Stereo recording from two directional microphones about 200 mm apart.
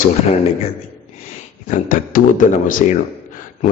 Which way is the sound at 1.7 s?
40° left (ahead or behind).